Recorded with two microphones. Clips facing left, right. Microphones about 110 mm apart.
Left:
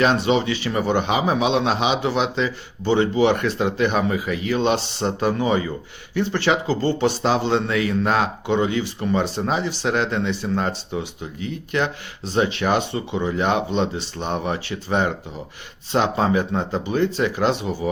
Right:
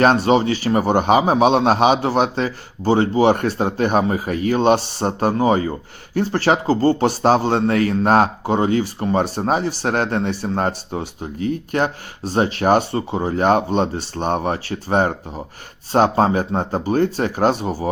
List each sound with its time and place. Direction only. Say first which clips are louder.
0.0 s a man's voice: right 4 dB; 45° right (ahead or behind)